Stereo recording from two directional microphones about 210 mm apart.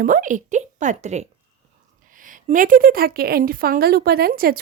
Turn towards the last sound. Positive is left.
turn(degrees=-45)  # may be behind; listen again after turning